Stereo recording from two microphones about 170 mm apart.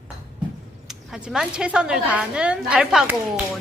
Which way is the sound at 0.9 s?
5° right (ahead or behind).